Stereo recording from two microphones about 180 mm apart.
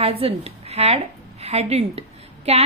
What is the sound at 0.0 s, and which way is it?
A woman's voice, 35° right (ahead or behind).